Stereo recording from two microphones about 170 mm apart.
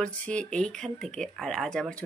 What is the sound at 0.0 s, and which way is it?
Speech, 5° left (ahead or behind).